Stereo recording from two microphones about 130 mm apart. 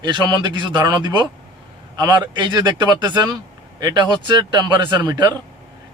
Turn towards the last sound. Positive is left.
turn(degrees=-30)  # may be behind; listen again after turning